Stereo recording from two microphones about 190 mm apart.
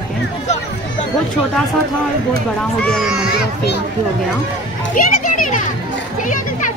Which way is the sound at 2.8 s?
Centre (ahead or behind).